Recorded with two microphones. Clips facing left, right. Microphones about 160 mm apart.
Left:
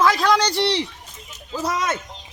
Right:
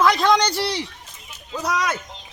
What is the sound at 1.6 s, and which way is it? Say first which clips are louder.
Speech: right 1 dB; 25° left (ahead or behind).